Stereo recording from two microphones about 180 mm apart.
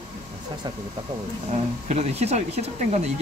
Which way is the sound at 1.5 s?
40° right (ahead or behind).